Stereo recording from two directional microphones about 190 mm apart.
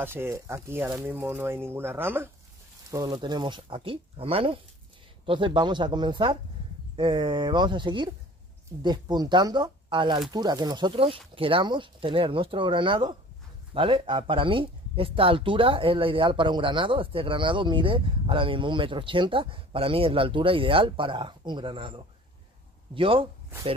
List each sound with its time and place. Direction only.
0.0 s speech: 10° right (ahead or behind); by 23.2 s 30° right (ahead or behind)